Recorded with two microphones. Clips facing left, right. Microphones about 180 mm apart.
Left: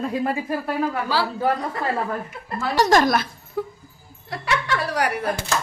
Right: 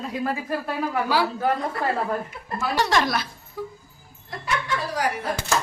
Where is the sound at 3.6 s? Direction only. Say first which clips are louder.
Left 5 dB; 55° left (ahead or behind).